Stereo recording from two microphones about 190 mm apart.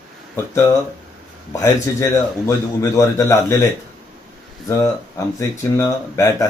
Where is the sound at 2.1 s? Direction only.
15° left (ahead or behind).